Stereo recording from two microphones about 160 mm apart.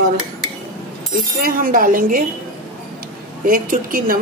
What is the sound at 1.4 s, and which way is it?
Speech, 60° right (ahead or behind).